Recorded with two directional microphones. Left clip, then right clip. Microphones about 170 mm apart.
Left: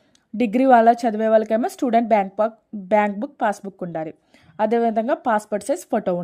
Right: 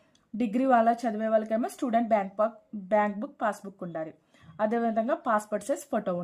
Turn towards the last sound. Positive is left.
turn(degrees=35)  # may be behind; listen again after turning